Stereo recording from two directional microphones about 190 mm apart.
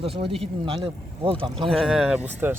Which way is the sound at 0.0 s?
30° right (ahead or behind).